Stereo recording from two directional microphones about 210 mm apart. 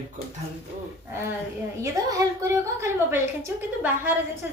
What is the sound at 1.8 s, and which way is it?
A woman's voice, 15° right (ahead or behind).